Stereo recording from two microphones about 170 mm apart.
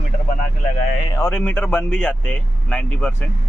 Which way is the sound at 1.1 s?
15° left (ahead or behind).